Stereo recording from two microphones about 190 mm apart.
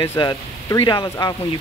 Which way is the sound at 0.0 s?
15° left (ahead or behind).